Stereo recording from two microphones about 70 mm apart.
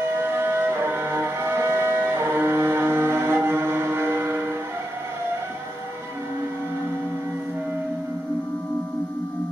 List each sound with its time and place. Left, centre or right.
0.1 s music: right